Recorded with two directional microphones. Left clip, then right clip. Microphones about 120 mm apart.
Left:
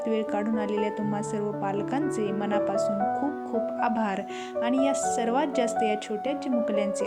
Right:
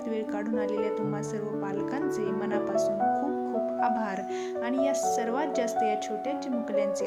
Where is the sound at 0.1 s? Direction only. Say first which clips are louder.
Left 2 dB; 45° left (ahead or behind).